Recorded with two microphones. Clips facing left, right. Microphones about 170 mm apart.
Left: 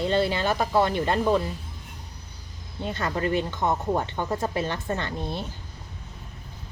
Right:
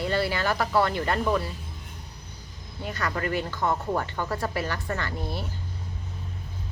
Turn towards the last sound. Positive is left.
turn(degrees=20)  # may be behind; listen again after turning